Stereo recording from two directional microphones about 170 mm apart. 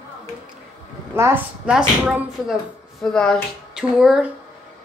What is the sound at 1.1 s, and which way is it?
Speech, 15° right (ahead or behind).